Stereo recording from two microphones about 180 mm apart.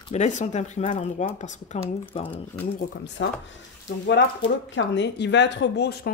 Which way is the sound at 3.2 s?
90° left.